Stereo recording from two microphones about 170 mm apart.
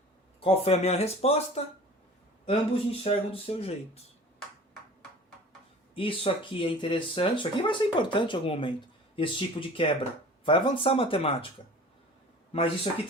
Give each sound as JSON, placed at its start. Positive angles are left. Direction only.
{"t": 0.3, "sound": "speech", "side_deg": 35}
{"t": 5.9, "sound": "speech", "side_deg": 30}
{"t": 12.5, "sound": "speech", "side_deg": 35}